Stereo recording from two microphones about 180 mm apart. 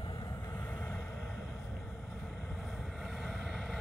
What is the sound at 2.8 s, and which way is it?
Vehicle, centre (ahead or behind).